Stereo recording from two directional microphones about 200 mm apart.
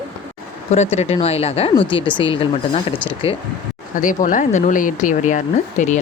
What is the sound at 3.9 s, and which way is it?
Speech, 40° left (ahead or behind).